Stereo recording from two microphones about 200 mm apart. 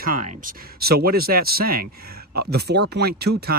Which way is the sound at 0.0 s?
40° right (ahead or behind).